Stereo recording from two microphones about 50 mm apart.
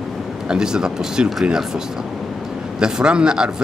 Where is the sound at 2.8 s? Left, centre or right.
Centre.